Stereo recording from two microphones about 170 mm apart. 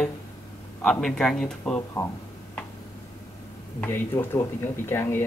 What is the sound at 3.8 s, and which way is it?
Speech, 15° left (ahead or behind).